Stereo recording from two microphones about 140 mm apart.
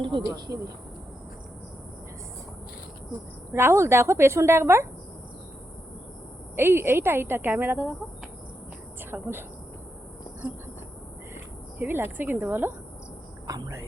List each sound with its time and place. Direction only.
0.0 s speech: 35° right (ahead or behind)
0.3 s a woman's voice: 20° right (ahead or behind)
3.5 s a woman's voice: 20° right (ahead or behind)
6.6 s a woman's voice: 15° right (ahead or behind)
9.0 s speech: 15° right (ahead or behind)
11.8 s a woman's voice: 15° right (ahead or behind)